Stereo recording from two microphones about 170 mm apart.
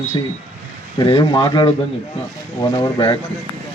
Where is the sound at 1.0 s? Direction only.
35° left (ahead or behind).